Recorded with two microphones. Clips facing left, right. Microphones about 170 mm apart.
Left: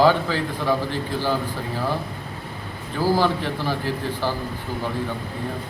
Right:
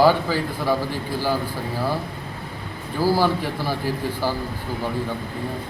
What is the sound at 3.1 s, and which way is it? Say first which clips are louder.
A man's voice: even; 10° right (ahead or behind).